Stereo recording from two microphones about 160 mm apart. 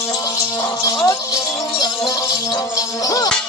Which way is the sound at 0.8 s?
20° left (ahead or behind).